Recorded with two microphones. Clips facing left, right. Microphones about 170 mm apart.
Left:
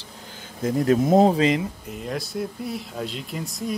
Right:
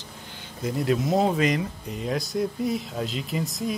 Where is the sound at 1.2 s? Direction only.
30° left (ahead or behind).